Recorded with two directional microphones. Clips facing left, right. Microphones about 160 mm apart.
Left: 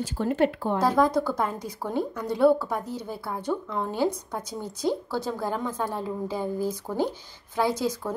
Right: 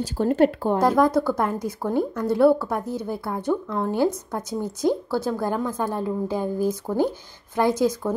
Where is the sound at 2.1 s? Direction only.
10° left (ahead or behind).